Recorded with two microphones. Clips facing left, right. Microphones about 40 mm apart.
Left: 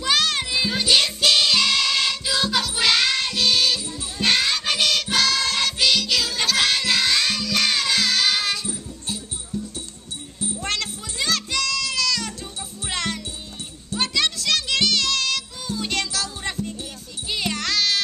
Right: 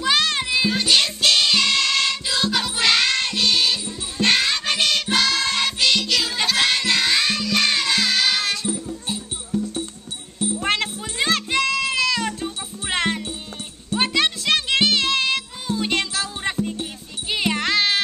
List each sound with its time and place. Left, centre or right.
0.0 s music: centre
10.6 s music: right